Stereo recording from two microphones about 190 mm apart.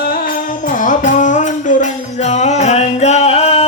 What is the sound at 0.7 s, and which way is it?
Music, 45° left (ahead or behind).